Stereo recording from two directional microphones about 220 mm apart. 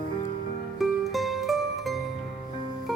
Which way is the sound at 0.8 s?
Centre (ahead or behind).